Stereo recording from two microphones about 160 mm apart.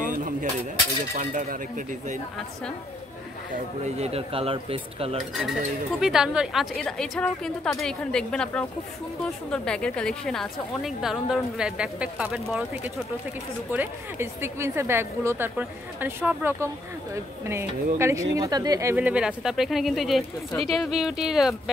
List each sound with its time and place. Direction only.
0.0 s a sound: 55° right (ahead or behind)
1.1 s speech: 60° right (ahead or behind)
3.8 s speech: 40° right (ahead or behind)
5.9 s a woman's voice: 5° right (ahead or behind)